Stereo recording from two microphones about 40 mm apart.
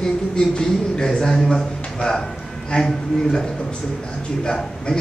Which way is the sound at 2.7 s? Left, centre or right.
Centre.